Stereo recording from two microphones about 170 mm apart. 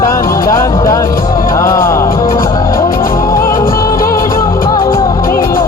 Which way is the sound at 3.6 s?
55° left (ahead or behind).